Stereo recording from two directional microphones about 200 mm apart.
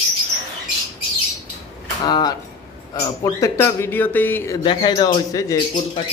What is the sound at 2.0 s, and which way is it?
Speech, 20° left (ahead or behind).